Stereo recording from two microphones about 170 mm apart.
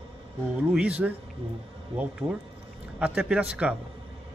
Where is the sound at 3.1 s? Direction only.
5° right (ahead or behind).